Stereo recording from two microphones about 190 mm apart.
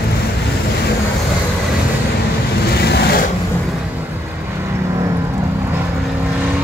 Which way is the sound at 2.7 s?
55° left (ahead or behind).